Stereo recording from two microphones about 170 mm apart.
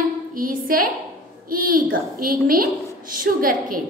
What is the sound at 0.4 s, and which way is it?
A woman's voice, 55° right (ahead or behind).